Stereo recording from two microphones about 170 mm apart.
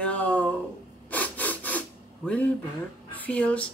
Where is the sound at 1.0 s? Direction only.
10° left (ahead or behind).